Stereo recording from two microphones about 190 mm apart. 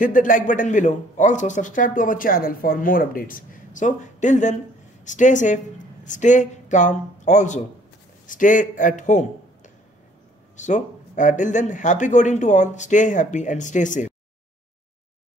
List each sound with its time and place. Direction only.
0.0 s a man's voice: 45° left (ahead or behind)